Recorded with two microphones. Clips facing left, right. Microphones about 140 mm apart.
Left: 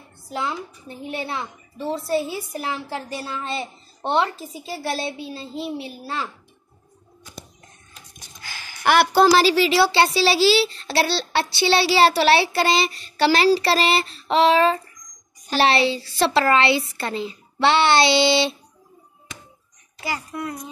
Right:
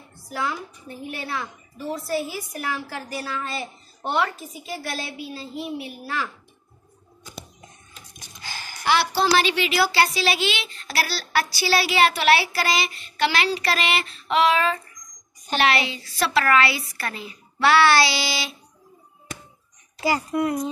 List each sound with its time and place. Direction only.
0.3 s a woman's voice: 25° left (ahead or behind)
8.4 s a sound: 25° right (ahead or behind)
8.8 s a woman's voice: 55° left (ahead or behind)
9.4 s a child's voice: 35° left (ahead or behind)
20.0 s a woman's voice: 25° right (ahead or behind)